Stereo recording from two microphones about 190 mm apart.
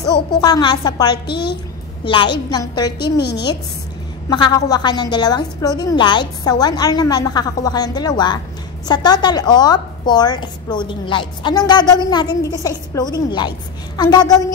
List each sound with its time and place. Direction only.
0.4 s a woman's voice: 20° left (ahead or behind)
2.5 s a woman's voice: 20° left (ahead or behind)
3.0 s a woman's voice: 60° left (ahead or behind)
4.3 s a woman's voice: 20° left (ahead or behind)